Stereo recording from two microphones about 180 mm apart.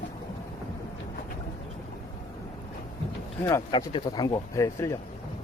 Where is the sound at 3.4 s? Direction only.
20° left (ahead or behind).